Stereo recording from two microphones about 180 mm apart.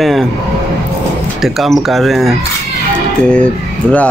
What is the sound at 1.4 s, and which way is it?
Speech, centre (ahead or behind).